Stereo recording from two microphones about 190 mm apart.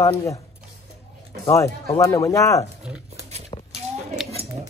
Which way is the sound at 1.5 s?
15° left (ahead or behind).